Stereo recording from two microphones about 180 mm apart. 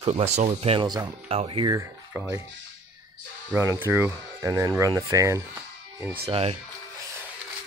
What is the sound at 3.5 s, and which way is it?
Speech, 15° right (ahead or behind).